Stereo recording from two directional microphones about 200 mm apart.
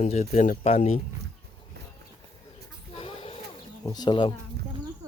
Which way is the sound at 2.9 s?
25° left (ahead or behind).